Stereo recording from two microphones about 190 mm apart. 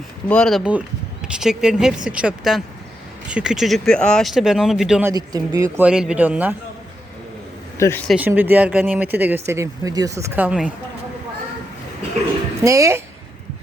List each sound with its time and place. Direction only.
0.3 s speech: 5° left (ahead or behind)
5.0 s speech: 20° right (ahead or behind)
7.8 s speech: 15° left (ahead or behind)
8.0 s speech: 5° right (ahead or behind)
12.6 s speech: 15° right (ahead or behind)